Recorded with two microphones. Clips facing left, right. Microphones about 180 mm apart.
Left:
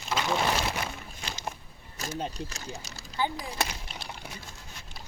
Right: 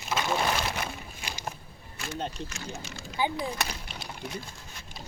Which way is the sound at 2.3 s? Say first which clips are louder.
Even; 35° left (ahead or behind).